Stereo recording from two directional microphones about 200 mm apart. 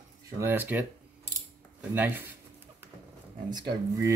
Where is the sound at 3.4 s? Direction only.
20° right (ahead or behind).